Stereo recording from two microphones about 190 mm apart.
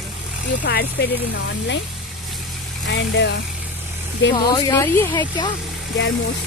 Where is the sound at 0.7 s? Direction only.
55° left (ahead or behind).